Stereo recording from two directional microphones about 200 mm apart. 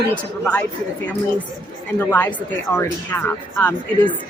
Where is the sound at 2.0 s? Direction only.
10° left (ahead or behind).